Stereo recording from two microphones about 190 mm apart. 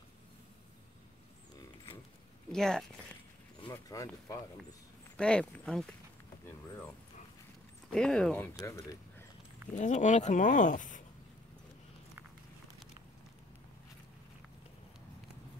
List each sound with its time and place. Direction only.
2.5 s speech: 5° left (ahead or behind)
3.6 s speech: 15° left (ahead or behind)
5.1 s speech: 5° left (ahead or behind)
7.9 s speech: 5° left (ahead or behind)
8.6 s speech: 15° left (ahead or behind)
9.7 s speech: 40° left (ahead or behind)